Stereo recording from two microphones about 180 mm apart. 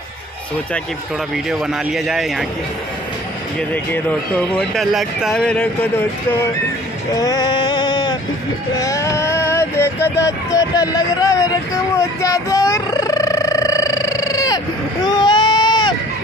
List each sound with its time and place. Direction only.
1.3 s speech: 5° right (ahead or behind)
3.7 s speech: 10° left (ahead or behind)
7.2 s male singing: 20° left (ahead or behind)
8.7 s a sound: 20° left (ahead or behind)
15.0 s baby cry: 25° left (ahead or behind)